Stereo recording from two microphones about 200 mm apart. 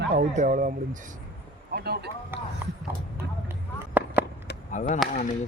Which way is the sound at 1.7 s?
55° right (ahead or behind).